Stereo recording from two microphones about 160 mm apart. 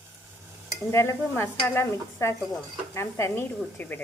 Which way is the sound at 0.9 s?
15° left (ahead or behind).